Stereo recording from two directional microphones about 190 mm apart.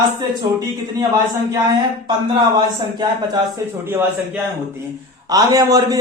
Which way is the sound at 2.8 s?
20° right (ahead or behind).